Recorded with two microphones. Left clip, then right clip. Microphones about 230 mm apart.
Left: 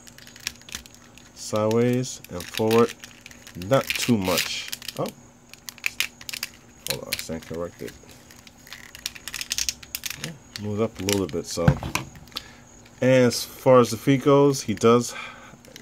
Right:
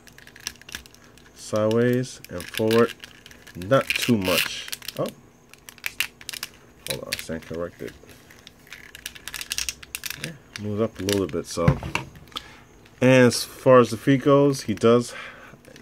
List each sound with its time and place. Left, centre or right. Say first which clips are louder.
1.5 s speech: right 1 dB; centre
5.7 s a sound: left 1 dB; centre
7.2 s speech: right 1 dB; centre
9.6 s a sound: left 1 dB; centre
10.7 s speech: even; centre
13.0 s speech: right 2 dB; centre
13.6 s speech: right 1 dB; centre